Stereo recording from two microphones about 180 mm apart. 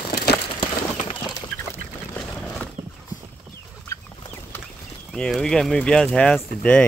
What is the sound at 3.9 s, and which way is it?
Chicken, 15° left (ahead or behind).